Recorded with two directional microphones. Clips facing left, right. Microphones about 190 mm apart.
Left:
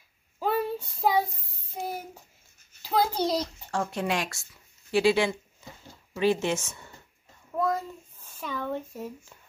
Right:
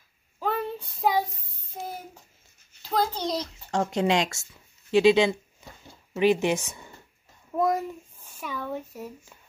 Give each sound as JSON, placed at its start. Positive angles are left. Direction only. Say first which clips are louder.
{"t": 0.4, "sound": "child singing", "louder": "left 2 dB", "side_deg": 10}
{"t": 2.8, "sound": "a child's voice", "louder": "left 1 dB", "side_deg": 10}
{"t": 3.7, "sound": "a child's voice", "louder": "right 5 dB", "side_deg": -20}